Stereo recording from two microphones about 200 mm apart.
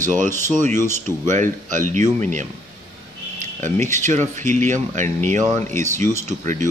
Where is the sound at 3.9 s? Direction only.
35° right (ahead or behind).